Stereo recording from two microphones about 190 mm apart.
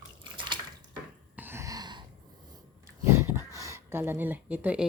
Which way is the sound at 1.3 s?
10° right (ahead or behind).